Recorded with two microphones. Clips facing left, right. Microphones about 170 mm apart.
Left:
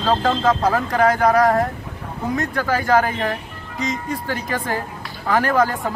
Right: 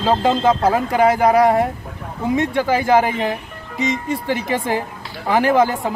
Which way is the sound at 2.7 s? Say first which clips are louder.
Right 1 dB; 10° right (ahead or behind).